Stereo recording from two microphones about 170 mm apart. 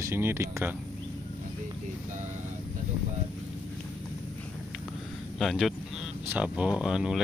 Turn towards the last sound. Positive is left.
turn(degrees=-5)  # may be behind; listen again after turning